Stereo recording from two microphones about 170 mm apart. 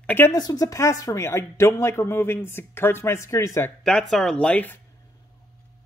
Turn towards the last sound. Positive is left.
turn(degrees=10)  # may be behind; listen again after turning